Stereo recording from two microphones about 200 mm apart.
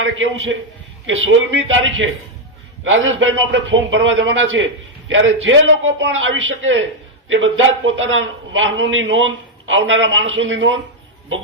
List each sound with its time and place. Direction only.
0.0 s a man's voice: 75° right (ahead or behind)